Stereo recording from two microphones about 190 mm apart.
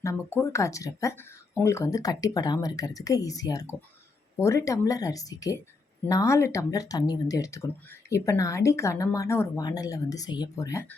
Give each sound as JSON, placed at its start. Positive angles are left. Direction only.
{"t": 0.0, "sound": "speech", "side_deg": 15}